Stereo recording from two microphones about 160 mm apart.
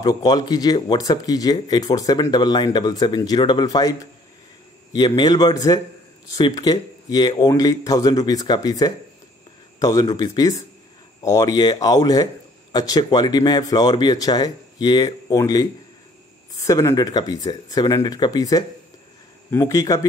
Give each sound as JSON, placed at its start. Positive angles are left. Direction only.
{"t": 0.0, "sound": "speech", "side_deg": 25}